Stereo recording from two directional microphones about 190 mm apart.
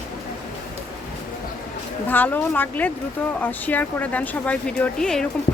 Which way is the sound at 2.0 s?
10° left (ahead or behind).